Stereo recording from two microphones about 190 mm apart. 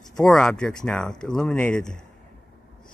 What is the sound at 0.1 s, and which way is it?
Speech, centre (ahead or behind).